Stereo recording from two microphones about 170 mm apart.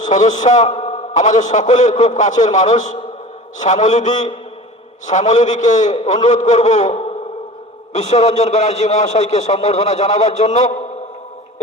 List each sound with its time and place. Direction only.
0.0 s a man's voice: 45° left (ahead or behind)